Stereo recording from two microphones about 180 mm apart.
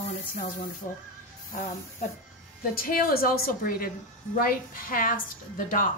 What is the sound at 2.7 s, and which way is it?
A woman's voice, 55° left (ahead or behind).